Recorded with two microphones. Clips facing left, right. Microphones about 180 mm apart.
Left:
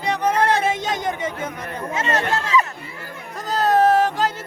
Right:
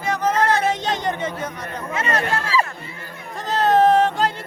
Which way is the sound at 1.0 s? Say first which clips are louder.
Even; 10° left (ahead or behind).